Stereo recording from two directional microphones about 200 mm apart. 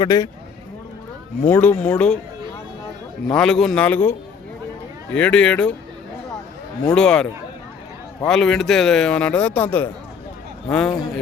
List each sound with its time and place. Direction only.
0.0 s speech: 20° left (ahead or behind)
1.5 s a man's voice: 10° left (ahead or behind)
3.2 s a man's voice: 5° left (ahead or behind)
5.1 s a man's voice: 5° left (ahead or behind)
6.9 s a man's voice: 5° left (ahead or behind)
8.3 s a man's voice: centre (ahead or behind)